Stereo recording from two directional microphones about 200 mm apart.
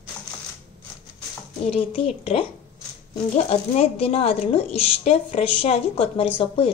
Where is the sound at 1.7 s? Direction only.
30° left (ahead or behind).